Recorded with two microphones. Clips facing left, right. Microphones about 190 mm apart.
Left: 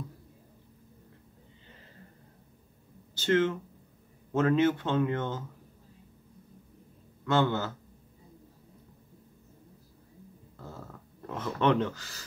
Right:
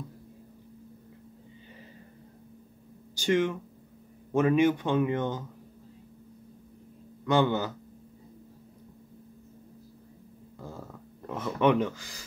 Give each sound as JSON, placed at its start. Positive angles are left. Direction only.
{"t": 3.2, "sound": "a man's voice", "side_deg": -15}
{"t": 7.2, "sound": "a man's voice", "side_deg": -15}
{"t": 11.2, "sound": "a man's voice", "side_deg": -10}